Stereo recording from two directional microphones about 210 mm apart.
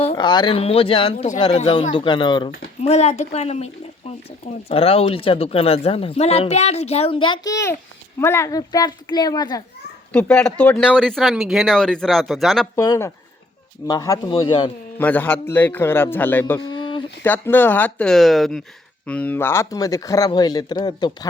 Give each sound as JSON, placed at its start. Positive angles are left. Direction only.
{"t": 0.0, "sound": "speech", "side_deg": 25}
{"t": 10.1, "sound": "speech", "side_deg": 5}
{"t": 12.7, "sound": "speech", "side_deg": 15}
{"t": 14.9, "sound": "speech", "side_deg": 10}
{"t": 16.6, "sound": "a sound", "side_deg": 20}
{"t": 17.2, "sound": "speech", "side_deg": 10}